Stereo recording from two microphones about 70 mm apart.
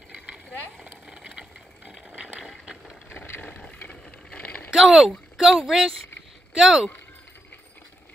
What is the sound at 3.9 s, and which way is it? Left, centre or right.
Bicycle, centre.